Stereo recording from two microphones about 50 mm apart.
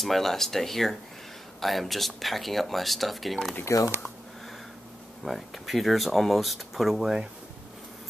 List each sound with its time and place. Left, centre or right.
0.0 s speech: centre
3.7 s speech: left
5.2 s speech: centre